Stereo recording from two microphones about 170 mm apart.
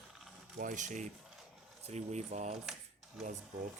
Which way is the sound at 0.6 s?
50° right (ahead or behind).